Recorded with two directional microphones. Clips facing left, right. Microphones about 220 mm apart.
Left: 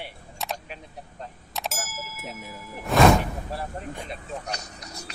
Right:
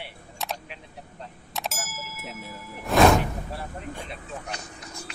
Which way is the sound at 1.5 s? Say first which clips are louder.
Even; centre (ahead or behind).